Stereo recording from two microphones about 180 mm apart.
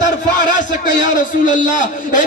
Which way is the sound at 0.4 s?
45° left (ahead or behind).